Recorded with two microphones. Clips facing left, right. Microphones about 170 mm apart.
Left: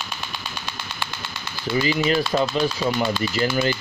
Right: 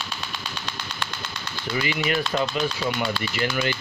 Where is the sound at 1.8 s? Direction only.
30° left (ahead or behind).